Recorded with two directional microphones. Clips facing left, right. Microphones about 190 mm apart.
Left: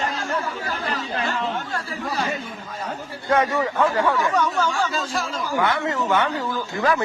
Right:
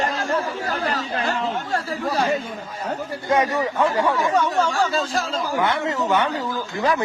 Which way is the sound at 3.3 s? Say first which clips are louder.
Even; 15° right (ahead or behind).